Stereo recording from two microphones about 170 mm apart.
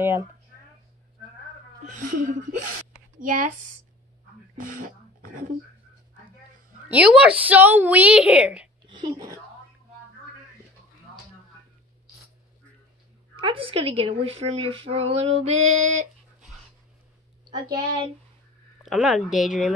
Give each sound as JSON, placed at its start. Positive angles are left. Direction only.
{"t": 0.0, "sound": "a woman's voice", "side_deg": -15}
{"t": 1.9, "sound": "speech", "side_deg": -50}
{"t": 4.6, "sound": "speech", "side_deg": -55}
{"t": 6.9, "sound": "a woman's voice", "side_deg": -5}
{"t": 8.8, "sound": "whispering", "side_deg": -25}
{"t": 13.4, "sound": "female singing", "side_deg": -30}
{"t": 18.8, "sound": "speech", "side_deg": -5}